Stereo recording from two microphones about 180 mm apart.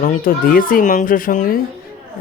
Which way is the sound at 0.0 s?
50° left (ahead or behind).